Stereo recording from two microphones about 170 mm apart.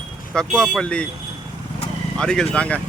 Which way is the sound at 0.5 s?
5° left (ahead or behind).